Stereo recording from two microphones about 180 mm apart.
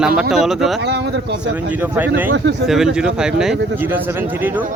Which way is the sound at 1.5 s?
10° right (ahead or behind).